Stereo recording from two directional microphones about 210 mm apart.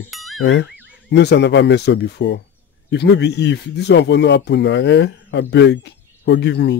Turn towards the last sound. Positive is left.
turn(degrees=55)  # may be behind; listen again after turning